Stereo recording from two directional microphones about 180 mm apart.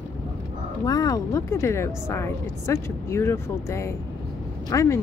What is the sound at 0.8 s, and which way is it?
Speech, 20° left (ahead or behind).